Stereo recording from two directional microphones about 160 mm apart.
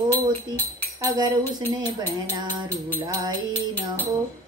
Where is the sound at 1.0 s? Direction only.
25° right (ahead or behind).